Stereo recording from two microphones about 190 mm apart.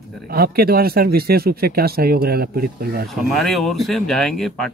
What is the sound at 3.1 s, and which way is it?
Speech, centre (ahead or behind).